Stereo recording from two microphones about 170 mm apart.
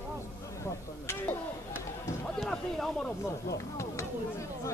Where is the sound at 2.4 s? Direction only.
5° left (ahead or behind).